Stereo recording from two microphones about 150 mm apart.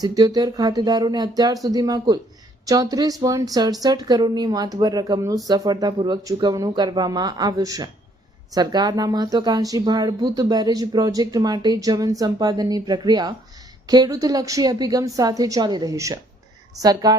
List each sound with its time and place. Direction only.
0.0 s speech: 25° right (ahead or behind)